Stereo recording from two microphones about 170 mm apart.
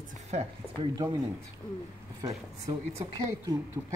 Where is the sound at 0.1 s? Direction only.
40° right (ahead or behind).